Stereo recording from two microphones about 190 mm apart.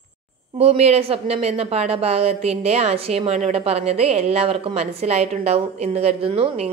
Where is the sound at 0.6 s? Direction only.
35° right (ahead or behind).